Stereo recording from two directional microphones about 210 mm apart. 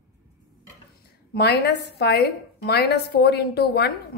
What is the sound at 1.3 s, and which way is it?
A woman's voice, 50° left (ahead or behind).